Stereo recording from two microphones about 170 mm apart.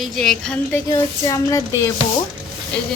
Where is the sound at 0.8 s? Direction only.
20° left (ahead or behind).